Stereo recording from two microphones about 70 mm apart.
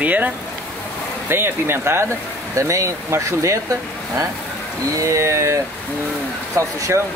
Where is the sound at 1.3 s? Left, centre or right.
Right.